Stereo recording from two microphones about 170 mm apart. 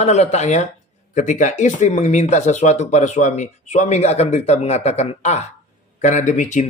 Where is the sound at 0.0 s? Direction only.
40° left (ahead or behind).